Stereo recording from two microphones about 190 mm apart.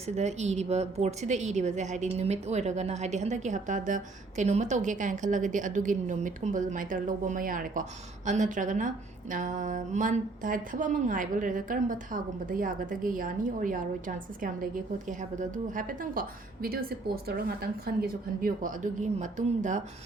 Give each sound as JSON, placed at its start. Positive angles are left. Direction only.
{"t": 0.2, "sound": "a woman's voice", "side_deg": -35}
{"t": 15.2, "sound": "speech", "side_deg": -40}